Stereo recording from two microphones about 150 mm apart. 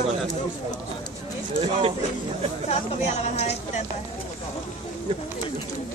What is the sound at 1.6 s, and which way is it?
Speech, 40° right (ahead or behind).